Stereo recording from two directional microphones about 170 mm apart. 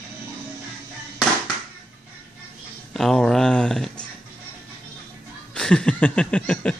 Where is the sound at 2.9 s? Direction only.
Centre (ahead or behind).